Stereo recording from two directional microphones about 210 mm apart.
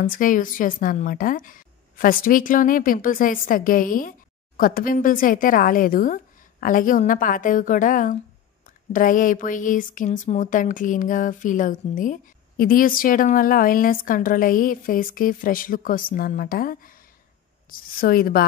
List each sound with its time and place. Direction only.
0.0 s speech: 40° left (ahead or behind)